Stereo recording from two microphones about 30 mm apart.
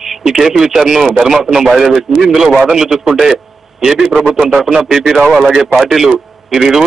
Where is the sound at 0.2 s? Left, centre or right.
Centre.